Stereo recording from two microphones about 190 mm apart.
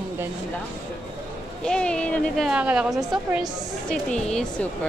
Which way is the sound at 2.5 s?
5° right (ahead or behind).